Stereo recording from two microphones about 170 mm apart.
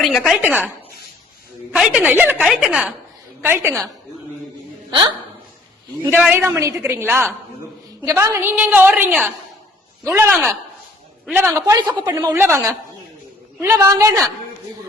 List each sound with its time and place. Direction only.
0.0 s a woman's voice: centre (ahead or behind)
1.7 s a woman's voice: 5° right (ahead or behind)
4.9 s a woman's voice: 30° right (ahead or behind)
6.3 s a woman's voice: 15° right (ahead or behind)
11.6 s a woman's voice: 20° right (ahead or behind)